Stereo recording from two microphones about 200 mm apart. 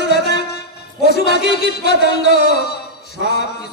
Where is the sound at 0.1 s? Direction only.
55° left (ahead or behind).